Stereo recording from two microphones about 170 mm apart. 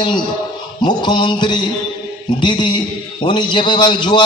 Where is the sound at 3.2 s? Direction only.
30° left (ahead or behind).